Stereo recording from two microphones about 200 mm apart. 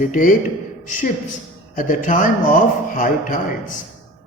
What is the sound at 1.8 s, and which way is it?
Speech, 40° left (ahead or behind).